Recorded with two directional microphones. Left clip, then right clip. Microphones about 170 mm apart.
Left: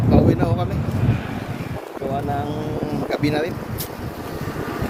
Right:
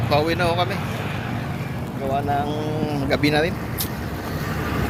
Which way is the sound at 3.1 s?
Centre (ahead or behind).